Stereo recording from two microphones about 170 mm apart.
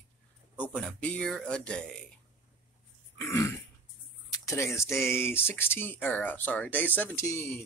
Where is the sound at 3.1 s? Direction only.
15° left (ahead or behind).